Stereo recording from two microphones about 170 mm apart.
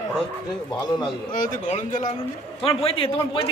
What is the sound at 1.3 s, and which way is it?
Speech, 55° left (ahead or behind).